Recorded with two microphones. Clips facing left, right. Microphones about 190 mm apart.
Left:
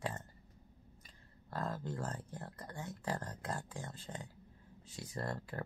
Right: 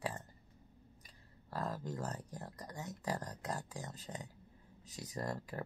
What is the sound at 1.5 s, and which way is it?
Speech, 10° right (ahead or behind).